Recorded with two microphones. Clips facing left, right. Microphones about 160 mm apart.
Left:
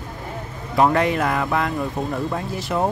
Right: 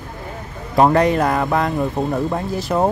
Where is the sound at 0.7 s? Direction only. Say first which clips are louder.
Right 4 dB; 40° right (ahead or behind).